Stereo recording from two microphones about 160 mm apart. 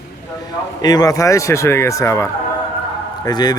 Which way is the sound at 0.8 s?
25° left (ahead or behind).